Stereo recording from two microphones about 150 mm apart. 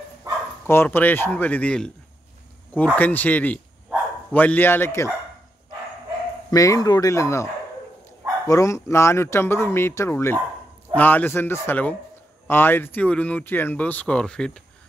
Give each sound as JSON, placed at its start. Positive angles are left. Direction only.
{"t": 0.7, "sound": "speech", "side_deg": 15}
{"t": 6.5, "sound": "speech", "side_deg": 20}
{"t": 8.5, "sound": "speech", "side_deg": 20}